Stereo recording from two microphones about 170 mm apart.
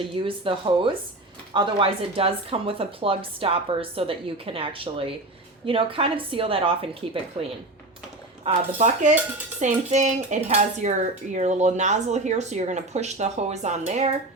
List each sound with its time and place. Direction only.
0.0 s a woman's voice: 30° right (ahead or behind)
8.4 s speech: 45° right (ahead or behind)